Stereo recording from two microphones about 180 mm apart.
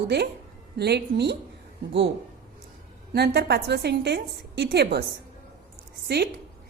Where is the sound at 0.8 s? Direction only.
65° right (ahead or behind).